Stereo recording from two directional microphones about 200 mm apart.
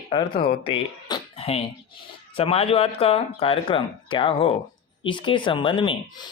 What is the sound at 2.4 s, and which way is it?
Speech, 30° left (ahead or behind).